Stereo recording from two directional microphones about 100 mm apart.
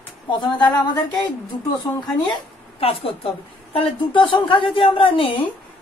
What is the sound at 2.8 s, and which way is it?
Speech, 75° left (ahead or behind).